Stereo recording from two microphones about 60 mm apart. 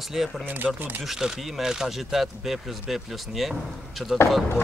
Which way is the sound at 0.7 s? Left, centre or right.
Right.